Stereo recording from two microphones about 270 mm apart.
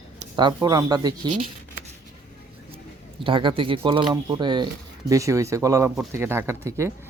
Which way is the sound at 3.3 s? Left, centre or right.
Centre.